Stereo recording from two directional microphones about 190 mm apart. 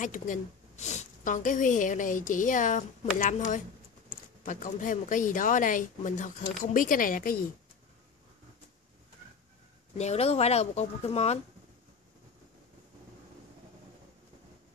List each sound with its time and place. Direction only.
0.0 s a woman's voice: 45° left (ahead or behind)
9.9 s speech: 35° left (ahead or behind)